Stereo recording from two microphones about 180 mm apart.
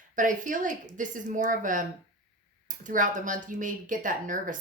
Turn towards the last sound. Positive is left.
turn(degrees=-45)  # may be behind; listen again after turning